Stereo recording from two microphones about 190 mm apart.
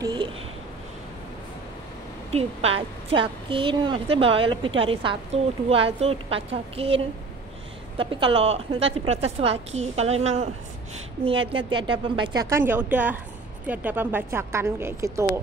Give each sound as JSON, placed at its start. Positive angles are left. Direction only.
{"t": 0.0, "sound": "a sound", "side_deg": -25}
{"t": 2.3, "sound": "a woman's voice", "side_deg": -30}
{"t": 8.0, "sound": "a woman's voice", "side_deg": -25}